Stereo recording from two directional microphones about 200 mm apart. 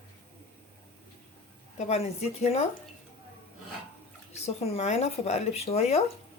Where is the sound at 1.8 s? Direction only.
30° left (ahead or behind).